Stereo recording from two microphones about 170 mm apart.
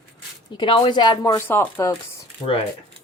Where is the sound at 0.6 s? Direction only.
30° left (ahead or behind).